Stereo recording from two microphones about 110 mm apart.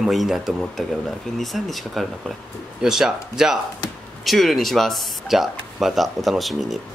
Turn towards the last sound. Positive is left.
turn(degrees=0)  # may be behind; listen again after turning